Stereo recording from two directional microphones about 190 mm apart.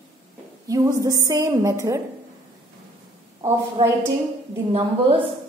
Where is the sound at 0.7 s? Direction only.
20° right (ahead or behind).